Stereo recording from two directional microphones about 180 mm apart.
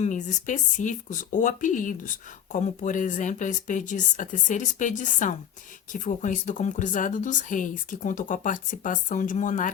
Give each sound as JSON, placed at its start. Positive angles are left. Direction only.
{"t": 0.0, "sound": "speech", "side_deg": 40}